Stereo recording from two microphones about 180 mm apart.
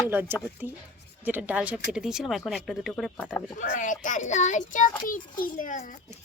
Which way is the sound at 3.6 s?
45° left (ahead or behind).